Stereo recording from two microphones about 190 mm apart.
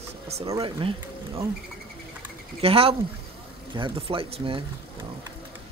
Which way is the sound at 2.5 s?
30° right (ahead or behind).